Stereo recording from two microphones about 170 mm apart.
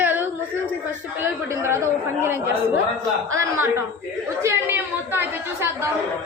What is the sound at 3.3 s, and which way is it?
A woman's voice, 15° right (ahead or behind).